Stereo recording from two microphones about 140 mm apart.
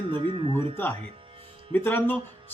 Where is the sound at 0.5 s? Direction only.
15° left (ahead or behind).